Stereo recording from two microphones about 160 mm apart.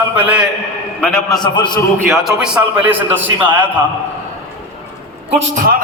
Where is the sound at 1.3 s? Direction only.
30° left (ahead or behind).